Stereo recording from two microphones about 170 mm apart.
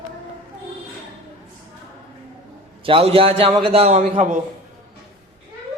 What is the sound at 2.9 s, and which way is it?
A man's voice, 35° right (ahead or behind).